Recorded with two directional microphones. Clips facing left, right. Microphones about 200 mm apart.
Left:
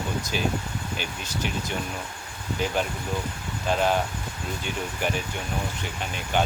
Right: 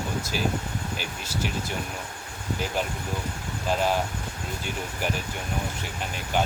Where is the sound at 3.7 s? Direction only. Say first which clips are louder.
Left 1 dB; 5° right (ahead or behind).